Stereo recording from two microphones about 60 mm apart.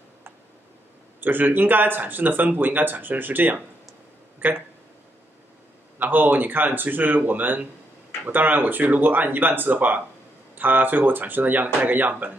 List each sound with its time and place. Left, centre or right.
1.2 s speech: right
5.9 s speech: right